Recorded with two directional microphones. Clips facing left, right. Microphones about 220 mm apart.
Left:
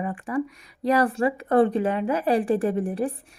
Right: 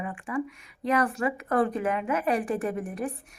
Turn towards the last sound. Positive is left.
turn(degrees=30)  # may be behind; listen again after turning